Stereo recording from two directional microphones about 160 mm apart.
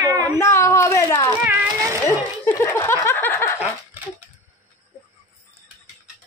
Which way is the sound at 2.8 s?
15° left (ahead or behind).